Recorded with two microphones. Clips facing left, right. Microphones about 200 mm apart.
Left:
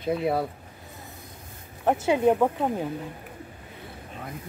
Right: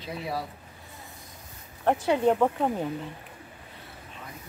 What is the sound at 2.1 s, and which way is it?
Speech, 10° left (ahead or behind).